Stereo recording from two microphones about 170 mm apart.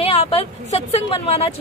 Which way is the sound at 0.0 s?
35° left (ahead or behind).